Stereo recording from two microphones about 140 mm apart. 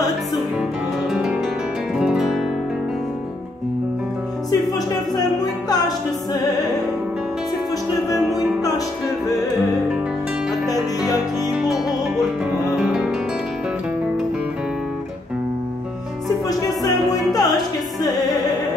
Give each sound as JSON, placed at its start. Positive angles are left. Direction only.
{"t": 1.1, "sound": "music", "side_deg": -5}
{"t": 2.0, "sound": "guitar", "side_deg": -5}
{"t": 4.5, "sound": "music", "side_deg": 25}
{"t": 12.7, "sound": "music", "side_deg": -5}
{"t": 17.3, "sound": "music", "side_deg": 25}